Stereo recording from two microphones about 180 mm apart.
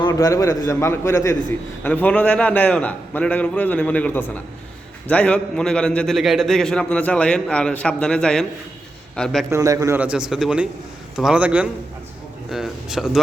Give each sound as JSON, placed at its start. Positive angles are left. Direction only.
{"t": 0.0, "sound": "a man's voice", "side_deg": 20}
{"t": 9.5, "sound": "a man's voice", "side_deg": -20}